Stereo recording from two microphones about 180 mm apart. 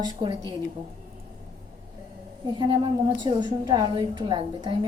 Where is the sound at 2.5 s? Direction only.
25° right (ahead or behind).